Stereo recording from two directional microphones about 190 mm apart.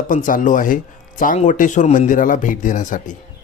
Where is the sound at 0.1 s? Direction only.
45° left (ahead or behind).